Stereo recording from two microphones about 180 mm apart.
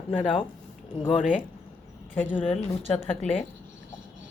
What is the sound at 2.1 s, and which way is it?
A woman's voice, 10° left (ahead or behind).